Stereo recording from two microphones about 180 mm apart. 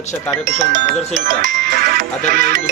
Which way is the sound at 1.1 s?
45° right (ahead or behind).